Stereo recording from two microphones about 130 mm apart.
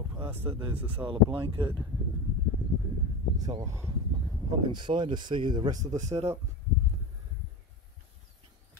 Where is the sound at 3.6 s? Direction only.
20° right (ahead or behind).